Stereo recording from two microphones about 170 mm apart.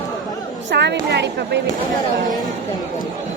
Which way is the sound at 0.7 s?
90° right.